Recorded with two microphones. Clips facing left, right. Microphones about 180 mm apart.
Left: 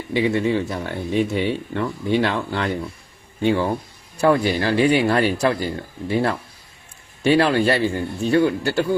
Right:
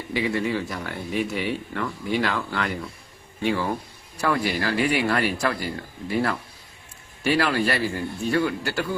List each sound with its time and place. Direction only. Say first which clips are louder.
0.1 s speech: left 5 dB; 25° left (ahead or behind)